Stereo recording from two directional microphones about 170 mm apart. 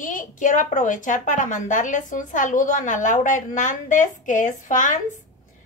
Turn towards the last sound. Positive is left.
turn(degrees=50)  # may be behind; listen again after turning